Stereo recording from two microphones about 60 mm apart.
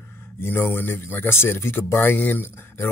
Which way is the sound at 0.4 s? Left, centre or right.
Left.